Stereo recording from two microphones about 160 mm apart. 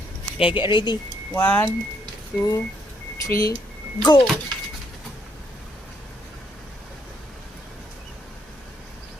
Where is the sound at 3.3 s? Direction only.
20° left (ahead or behind).